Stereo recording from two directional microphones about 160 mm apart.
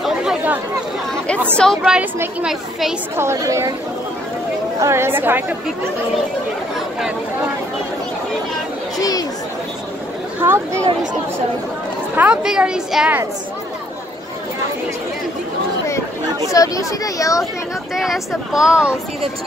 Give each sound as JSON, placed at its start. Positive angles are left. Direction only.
{"t": 0.0, "sound": "chatter", "side_deg": -5}
{"t": 1.8, "sound": "speech", "side_deg": -10}
{"t": 3.2, "sound": "a woman's voice", "side_deg": -20}
{"t": 4.7, "sound": "speech", "side_deg": -15}
{"t": 8.9, "sound": "chatter", "side_deg": 25}
{"t": 10.4, "sound": "speech", "side_deg": -15}
{"t": 12.2, "sound": "a woman's voice", "side_deg": -5}
{"t": 16.5, "sound": "speech", "side_deg": 20}
{"t": 17.9, "sound": "a woman's voice", "side_deg": 0}